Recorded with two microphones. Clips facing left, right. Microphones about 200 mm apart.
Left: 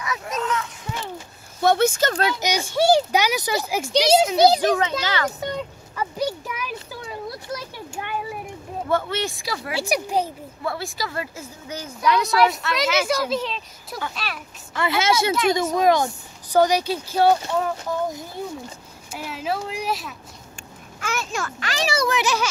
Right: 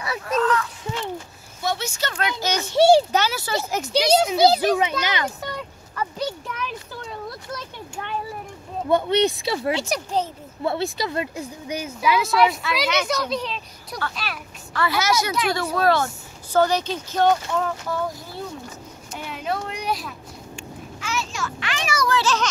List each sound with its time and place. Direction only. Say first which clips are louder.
0.4 s a sound: right 7 dB; 25° left (ahead or behind)
1.6 s speech: left 8 dB; 55° left (ahead or behind); by 2.3 s 40° left (ahead or behind)
2.7 s speech: right 4 dB; 30° right (ahead or behind)
3.1 s speech: left 1 dB; 15° left (ahead or behind)
3.9 s speech: left 1 dB; centre (ahead or behind)
4.4 s speech: even; 15° left (ahead or behind)
4.6 s a child's voice: even; 10° right (ahead or behind)
5.9 s speech: left 2 dB; 10° left (ahead or behind)
8.8 s speech: right 5 dB; 20° right (ahead or behind)
9.8 s speech: left 2 dB; 15° left (ahead or behind)
10.6 s speech: right 4 dB; 25° right (ahead or behind); by 14.4 s centre (ahead or behind)
14.7 s a woman's voice: left 1 dB; 20° left (ahead or behind)
19.1 s speech: left 1 dB; 5° left (ahead or behind)
21.0 s a child's voice: left 2 dB; 55° left (ahead or behind); by 22.5 s 15° left (ahead or behind)